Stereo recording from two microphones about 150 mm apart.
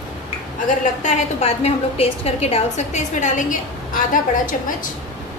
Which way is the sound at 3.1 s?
55° left (ahead or behind).